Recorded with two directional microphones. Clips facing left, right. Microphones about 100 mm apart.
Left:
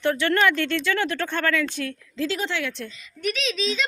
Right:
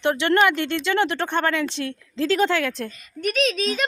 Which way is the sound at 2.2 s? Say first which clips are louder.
Right 7 dB; 45° right (ahead or behind).